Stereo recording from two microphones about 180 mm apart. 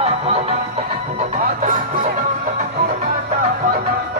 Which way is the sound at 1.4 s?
50° right (ahead or behind).